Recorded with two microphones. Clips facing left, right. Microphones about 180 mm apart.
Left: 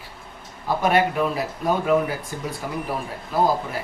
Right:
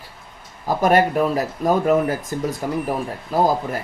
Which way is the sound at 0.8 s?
45° right (ahead or behind).